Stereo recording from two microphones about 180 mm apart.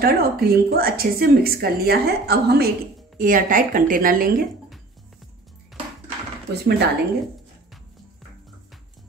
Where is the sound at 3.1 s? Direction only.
50° right (ahead or behind).